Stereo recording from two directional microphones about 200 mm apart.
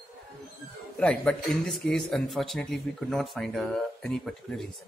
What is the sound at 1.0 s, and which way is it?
Speech, 5° left (ahead or behind).